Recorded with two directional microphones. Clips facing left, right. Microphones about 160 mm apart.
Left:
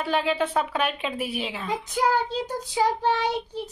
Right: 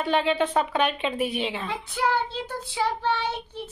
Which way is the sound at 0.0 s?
5° left (ahead or behind).